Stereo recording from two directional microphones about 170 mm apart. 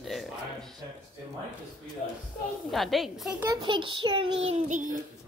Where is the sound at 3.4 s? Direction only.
25° right (ahead or behind).